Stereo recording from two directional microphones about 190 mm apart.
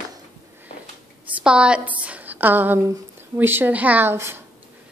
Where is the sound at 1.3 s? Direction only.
5° right (ahead or behind).